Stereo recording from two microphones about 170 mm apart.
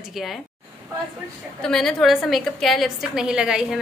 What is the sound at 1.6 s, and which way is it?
A woman's voice, 5° left (ahead or behind).